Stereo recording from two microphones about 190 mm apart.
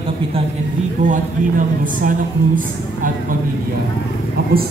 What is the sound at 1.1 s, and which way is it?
Speech, 45° right (ahead or behind).